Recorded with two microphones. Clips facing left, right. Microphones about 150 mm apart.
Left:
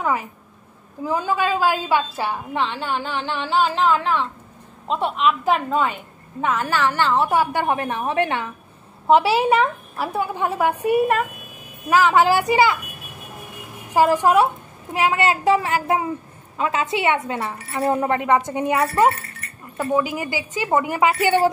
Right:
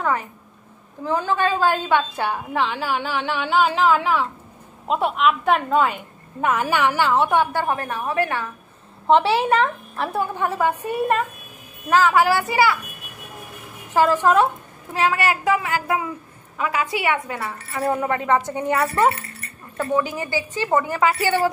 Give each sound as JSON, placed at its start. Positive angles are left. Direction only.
{"t": 0.0, "sound": "a woman's voice", "side_deg": 5}
{"t": 6.4, "sound": "a woman's voice", "side_deg": -10}
{"t": 7.5, "sound": "a woman's voice", "side_deg": 15}
{"t": 9.0, "sound": "a woman's voice", "side_deg": 5}
{"t": 11.9, "sound": "a woman's voice", "side_deg": 20}
{"t": 13.9, "sound": "a woman's voice", "side_deg": 15}
{"t": 19.8, "sound": "a woman's voice", "side_deg": 10}